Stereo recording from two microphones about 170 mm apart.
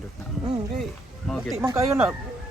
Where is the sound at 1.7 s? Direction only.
10° right (ahead or behind).